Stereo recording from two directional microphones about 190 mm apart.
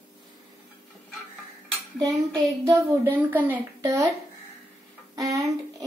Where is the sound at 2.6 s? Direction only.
15° right (ahead or behind).